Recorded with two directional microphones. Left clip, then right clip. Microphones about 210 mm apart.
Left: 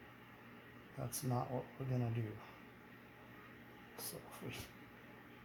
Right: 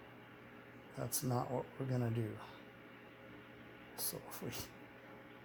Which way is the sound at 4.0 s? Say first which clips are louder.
Right 4 dB; 35° right (ahead or behind).